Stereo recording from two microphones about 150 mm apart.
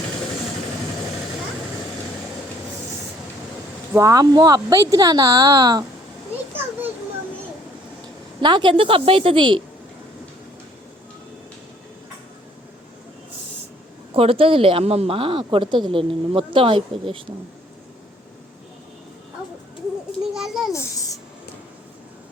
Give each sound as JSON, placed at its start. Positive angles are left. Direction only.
{"t": 3.9, "sound": "speech", "side_deg": -25}
{"t": 8.4, "sound": "speech", "side_deg": -30}
{"t": 14.1, "sound": "speech", "side_deg": -40}
{"t": 20.3, "sound": "a child's voice", "side_deg": 0}
{"t": 20.7, "sound": "a sound", "side_deg": 20}